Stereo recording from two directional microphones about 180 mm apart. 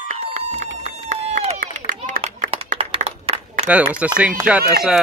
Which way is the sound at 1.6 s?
45° right (ahead or behind).